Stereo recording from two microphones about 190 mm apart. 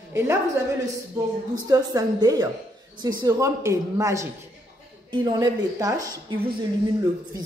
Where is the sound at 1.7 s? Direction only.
20° right (ahead or behind).